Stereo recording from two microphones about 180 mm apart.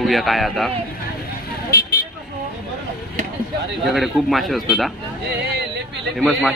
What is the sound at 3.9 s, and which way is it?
Speech, centre (ahead or behind).